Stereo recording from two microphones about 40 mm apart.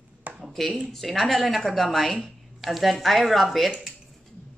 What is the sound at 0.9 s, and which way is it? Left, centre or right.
Speech, centre.